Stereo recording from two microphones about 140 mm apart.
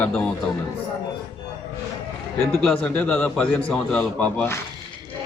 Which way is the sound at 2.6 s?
10° left (ahead or behind).